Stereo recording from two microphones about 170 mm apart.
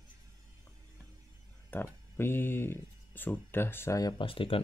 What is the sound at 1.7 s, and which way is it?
Speech, 15° left (ahead or behind).